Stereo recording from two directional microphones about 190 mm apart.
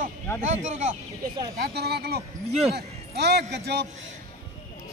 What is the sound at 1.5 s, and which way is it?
A man's voice, 55° right (ahead or behind).